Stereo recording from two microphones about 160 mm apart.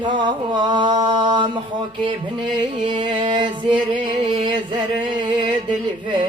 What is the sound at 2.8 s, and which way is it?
Music, 30° right (ahead or behind).